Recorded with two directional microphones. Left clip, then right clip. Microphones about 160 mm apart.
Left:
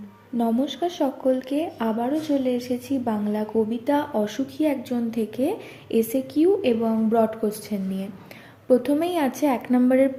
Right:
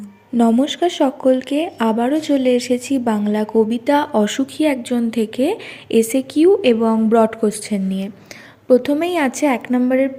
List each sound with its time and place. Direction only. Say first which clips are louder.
0.3 s speech: right 8 dB; 35° right (ahead or behind); by 10.1 s 10° right (ahead or behind)